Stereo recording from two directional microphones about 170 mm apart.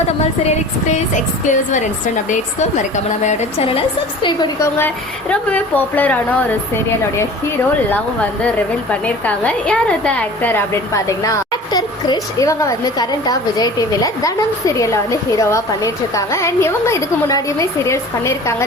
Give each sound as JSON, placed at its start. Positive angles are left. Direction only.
{"t": 0.4, "sound": "speech", "side_deg": 40}
{"t": 2.9, "sound": "a woman's voice", "side_deg": 40}
{"t": 5.3, "sound": "a woman's voice", "side_deg": 10}
{"t": 7.9, "sound": "a woman's voice", "side_deg": 10}